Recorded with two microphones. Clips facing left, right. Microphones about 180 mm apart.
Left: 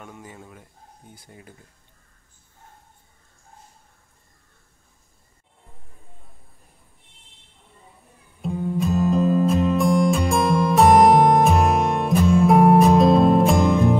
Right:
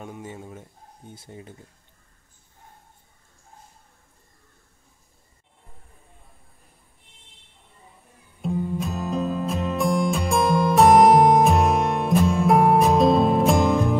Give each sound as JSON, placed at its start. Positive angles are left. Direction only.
{"t": 0.0, "sound": "a sound", "side_deg": -25}
{"t": 1.1, "sound": "speech", "side_deg": -25}
{"t": 8.4, "sound": "music", "side_deg": 0}